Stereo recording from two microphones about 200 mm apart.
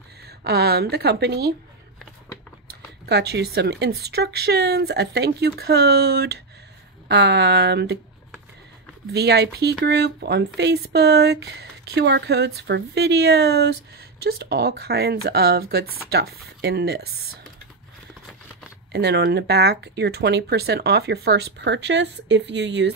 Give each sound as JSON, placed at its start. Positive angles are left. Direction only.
{"t": 0.4, "sound": "speech", "side_deg": -55}
{"t": 3.1, "sound": "speech", "side_deg": -55}
{"t": 9.1, "sound": "speech", "side_deg": -55}
{"t": 18.9, "sound": "speech", "side_deg": -55}